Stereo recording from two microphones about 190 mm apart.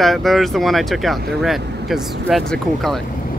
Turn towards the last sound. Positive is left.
turn(degrees=0)  # may be behind; listen again after turning